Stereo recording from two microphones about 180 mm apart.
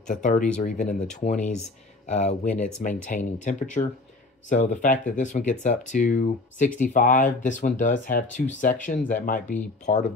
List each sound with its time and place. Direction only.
0.0 s speech: 45° left (ahead or behind)